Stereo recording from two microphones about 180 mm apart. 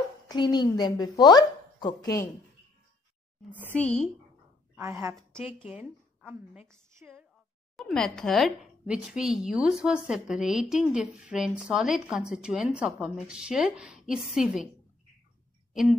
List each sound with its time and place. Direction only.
0.3 s a woman's voice: 25° left (ahead or behind)
3.7 s speech: 5° left (ahead or behind)
4.7 s a woman's voice: 15° right (ahead or behind)
5.1 s a woman's voice: centre (ahead or behind)
7.7 s speech: 5° left (ahead or behind)
15.7 s speech: centre (ahead or behind)